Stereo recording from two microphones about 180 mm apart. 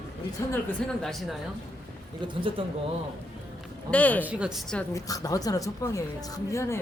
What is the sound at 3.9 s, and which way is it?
Speech, 10° left (ahead or behind).